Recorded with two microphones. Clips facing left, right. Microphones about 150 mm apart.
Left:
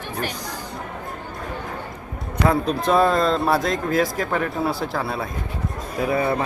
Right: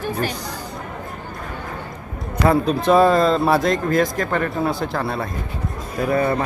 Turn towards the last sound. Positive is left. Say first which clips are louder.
# right 2 dB
turn(degrees=5)  # may be behind; listen again after turning